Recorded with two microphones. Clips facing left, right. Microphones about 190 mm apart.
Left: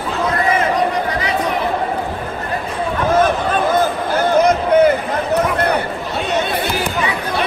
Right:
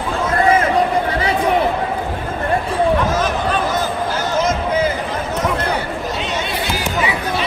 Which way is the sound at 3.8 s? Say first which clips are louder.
Left 4 dB; 60° left (ahead or behind).